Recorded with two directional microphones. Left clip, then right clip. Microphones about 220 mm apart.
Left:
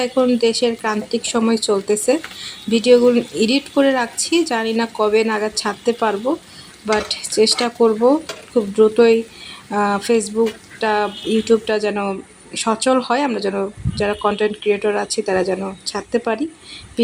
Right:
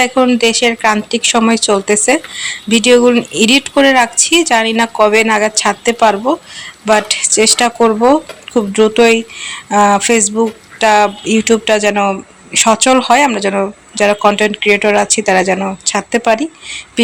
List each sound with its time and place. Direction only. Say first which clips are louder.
0.0 s speech: right 6 dB; 15° right (ahead or behind)